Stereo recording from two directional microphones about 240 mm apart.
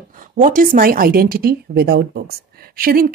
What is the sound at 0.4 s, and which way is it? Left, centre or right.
A woman's voice, right.